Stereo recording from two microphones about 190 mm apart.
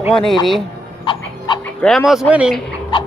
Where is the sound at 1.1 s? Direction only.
25° left (ahead or behind).